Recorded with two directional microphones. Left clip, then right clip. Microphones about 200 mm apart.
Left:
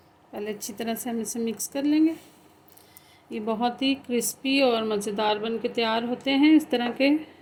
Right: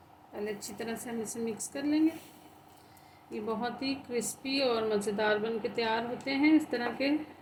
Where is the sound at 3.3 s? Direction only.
50° left (ahead or behind).